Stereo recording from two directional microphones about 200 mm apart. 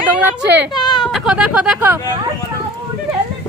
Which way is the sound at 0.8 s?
20° left (ahead or behind).